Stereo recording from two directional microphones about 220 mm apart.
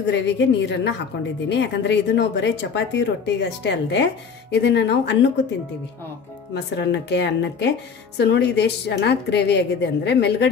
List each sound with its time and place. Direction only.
0.0 s speech: 55° left (ahead or behind)
6.5 s speech: 50° left (ahead or behind)